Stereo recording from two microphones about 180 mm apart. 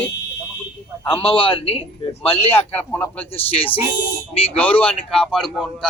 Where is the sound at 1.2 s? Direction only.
30° left (ahead or behind).